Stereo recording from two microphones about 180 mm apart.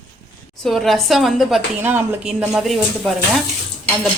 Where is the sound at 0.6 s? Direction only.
Centre (ahead or behind).